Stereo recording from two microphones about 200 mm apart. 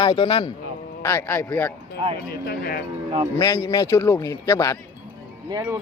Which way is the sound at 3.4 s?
15° left (ahead or behind).